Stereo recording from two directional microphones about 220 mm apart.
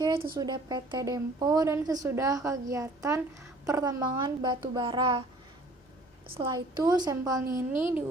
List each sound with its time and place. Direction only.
0.0 s a sound: 25° right (ahead or behind)
0.3 s a woman's voice: 20° right (ahead or behind)
6.3 s a child's voice: 20° right (ahead or behind)